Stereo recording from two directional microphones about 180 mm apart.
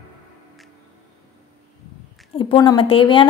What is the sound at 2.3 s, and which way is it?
Speech, 30° left (ahead or behind).